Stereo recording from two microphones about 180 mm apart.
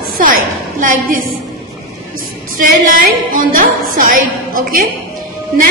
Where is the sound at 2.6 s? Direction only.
50° right (ahead or behind).